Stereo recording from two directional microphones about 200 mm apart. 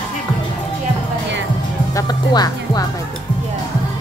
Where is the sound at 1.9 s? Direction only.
20° left (ahead or behind).